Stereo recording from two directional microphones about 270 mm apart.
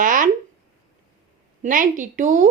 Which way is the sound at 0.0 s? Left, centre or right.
Right.